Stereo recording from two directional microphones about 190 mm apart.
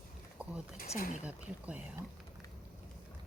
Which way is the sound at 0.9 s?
45° left (ahead or behind).